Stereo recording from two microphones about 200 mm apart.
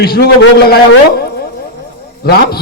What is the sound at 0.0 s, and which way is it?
A man's voice, 50° left (ahead or behind).